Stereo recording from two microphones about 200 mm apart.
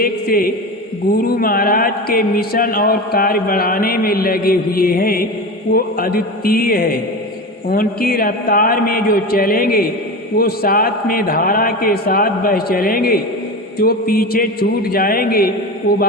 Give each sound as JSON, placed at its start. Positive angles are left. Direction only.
{"t": 0.0, "sound": "speech", "side_deg": 50}